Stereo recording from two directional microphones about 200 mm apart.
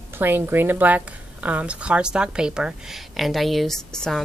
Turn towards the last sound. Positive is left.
turn(degrees=0)  # may be behind; listen again after turning